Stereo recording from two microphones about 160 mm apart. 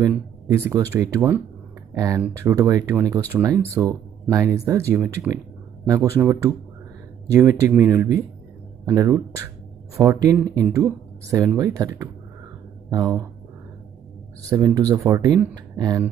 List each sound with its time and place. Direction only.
0.5 s speech: 15° right (ahead or behind)
12.9 s speech: 25° right (ahead or behind)
14.4 s speech: 20° right (ahead or behind)